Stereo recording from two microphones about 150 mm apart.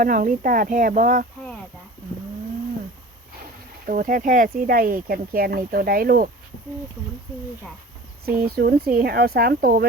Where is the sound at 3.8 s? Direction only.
65° right (ahead or behind).